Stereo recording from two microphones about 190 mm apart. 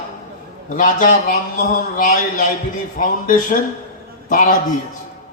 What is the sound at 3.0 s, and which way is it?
A man's voice, 45° left (ahead or behind).